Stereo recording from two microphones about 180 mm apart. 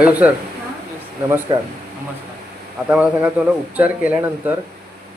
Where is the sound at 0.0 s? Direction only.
10° right (ahead or behind).